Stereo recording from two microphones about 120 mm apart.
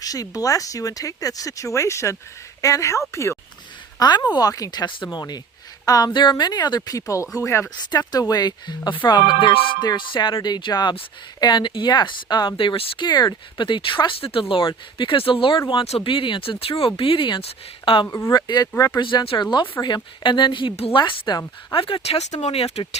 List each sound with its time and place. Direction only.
0.0 s speech: 30° left (ahead or behind)
3.9 s a woman's voice: 35° left (ahead or behind)
7.9 s speech: 35° left (ahead or behind)
18.2 s speech: 30° left (ahead or behind); by 21.0 s 50° left (ahead or behind)
21.0 s speech: 40° left (ahead or behind); by 23.0 s 55° left (ahead or behind)